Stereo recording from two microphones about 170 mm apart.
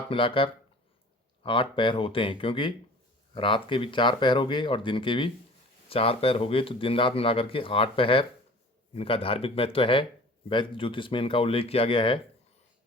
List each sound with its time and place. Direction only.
0.1 s speech: 30° left (ahead or behind)